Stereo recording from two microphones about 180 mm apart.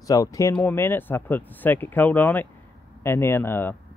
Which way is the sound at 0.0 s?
20° left (ahead or behind).